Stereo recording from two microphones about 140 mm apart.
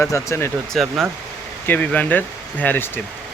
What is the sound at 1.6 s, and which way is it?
Speech, 10° left (ahead or behind).